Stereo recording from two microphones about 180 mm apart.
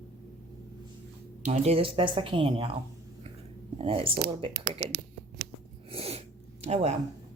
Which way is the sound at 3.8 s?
30° right (ahead or behind).